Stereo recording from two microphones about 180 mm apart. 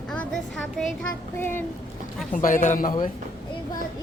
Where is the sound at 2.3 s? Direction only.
45° left (ahead or behind).